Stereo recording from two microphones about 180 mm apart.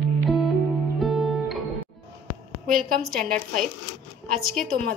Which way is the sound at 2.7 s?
50° right (ahead or behind).